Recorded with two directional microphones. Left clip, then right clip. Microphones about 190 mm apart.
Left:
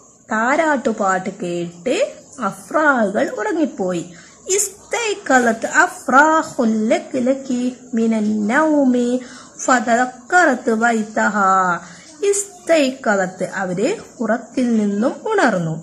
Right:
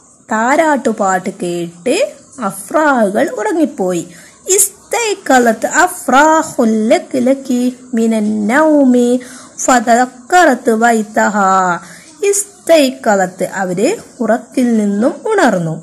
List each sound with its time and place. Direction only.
0.3 s a child's voice: 25° right (ahead or behind)